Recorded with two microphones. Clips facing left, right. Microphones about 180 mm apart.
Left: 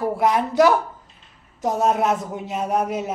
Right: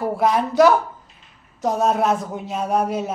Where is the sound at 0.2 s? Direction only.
20° left (ahead or behind).